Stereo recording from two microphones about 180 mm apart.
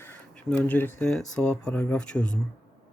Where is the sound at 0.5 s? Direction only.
10° left (ahead or behind).